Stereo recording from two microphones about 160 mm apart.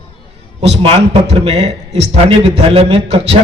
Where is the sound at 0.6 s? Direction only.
40° right (ahead or behind).